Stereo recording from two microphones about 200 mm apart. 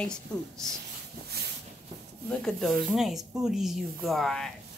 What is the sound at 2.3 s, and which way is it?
Speech, 5° left (ahead or behind).